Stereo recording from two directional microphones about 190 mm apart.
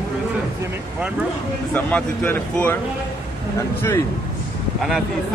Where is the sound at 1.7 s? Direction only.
10° left (ahead or behind).